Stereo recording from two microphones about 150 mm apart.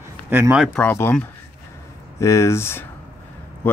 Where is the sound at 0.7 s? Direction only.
15° left (ahead or behind).